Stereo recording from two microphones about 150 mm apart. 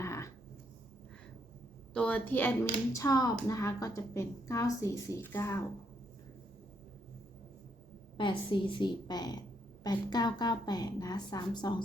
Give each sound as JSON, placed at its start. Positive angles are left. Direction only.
{"t": 0.0, "sound": "a sound", "side_deg": 20}
{"t": 1.9, "sound": "a woman's voice", "side_deg": 10}
{"t": 8.2, "sound": "a woman's voice", "side_deg": 35}